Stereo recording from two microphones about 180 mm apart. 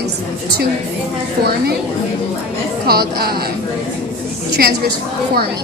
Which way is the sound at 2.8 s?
60° right (ahead or behind).